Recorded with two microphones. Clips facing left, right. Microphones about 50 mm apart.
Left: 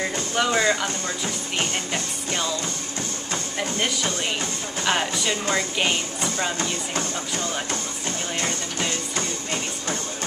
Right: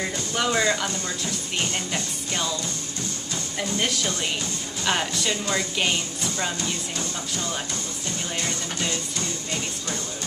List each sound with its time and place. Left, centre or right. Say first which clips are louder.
0.4 s speech: left 2 dB; centre
1.9 s speech: left 2 dB; centre
3.5 s speech: even; centre
6.6 s music: left 3 dB; left
9.1 s music: left 2 dB; left